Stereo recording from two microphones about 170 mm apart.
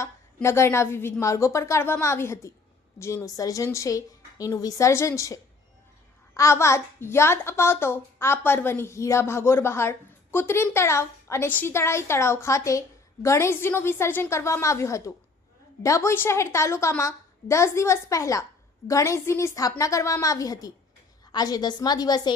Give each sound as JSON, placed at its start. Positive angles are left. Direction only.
{"t": 0.3, "sound": "a child's voice", "side_deg": 15}